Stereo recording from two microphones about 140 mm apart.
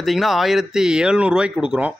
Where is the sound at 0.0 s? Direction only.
Centre (ahead or behind).